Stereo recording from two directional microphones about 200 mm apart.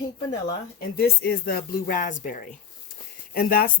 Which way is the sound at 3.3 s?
50° left (ahead or behind).